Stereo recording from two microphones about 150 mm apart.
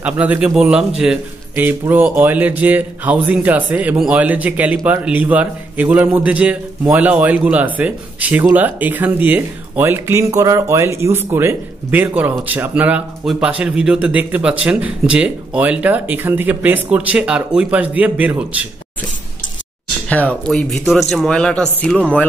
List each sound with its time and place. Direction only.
0.0 s a man's voice: 10° right (ahead or behind)
20.1 s a man's voice: 10° left (ahead or behind)